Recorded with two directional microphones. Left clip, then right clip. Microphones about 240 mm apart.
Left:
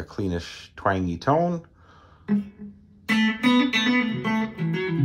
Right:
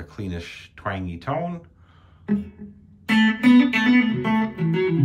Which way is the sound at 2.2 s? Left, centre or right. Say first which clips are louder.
Right 1 dB; centre.